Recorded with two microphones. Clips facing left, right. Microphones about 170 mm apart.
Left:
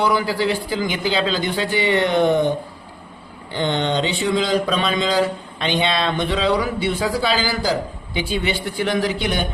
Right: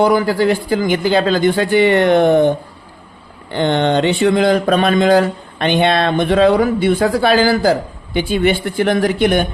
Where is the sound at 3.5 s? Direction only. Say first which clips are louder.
Right 6 dB; 55° right (ahead or behind).